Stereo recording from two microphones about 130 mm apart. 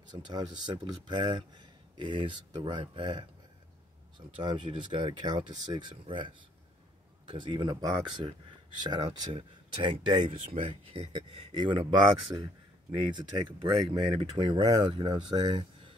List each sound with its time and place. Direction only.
0.3 s speech: 35° right (ahead or behind)
4.4 s speech: 40° right (ahead or behind)
11.1 s speech: 35° right (ahead or behind)